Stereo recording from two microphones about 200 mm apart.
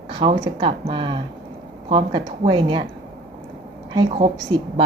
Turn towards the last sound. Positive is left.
turn(degrees=-30)  # may be behind; listen again after turning